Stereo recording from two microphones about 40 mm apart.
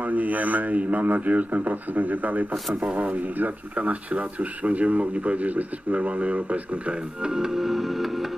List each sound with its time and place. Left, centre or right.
0.0 s speech: right
7.2 s music: centre